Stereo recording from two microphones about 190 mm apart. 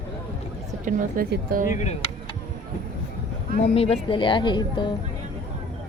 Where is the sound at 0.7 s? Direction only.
45° right (ahead or behind).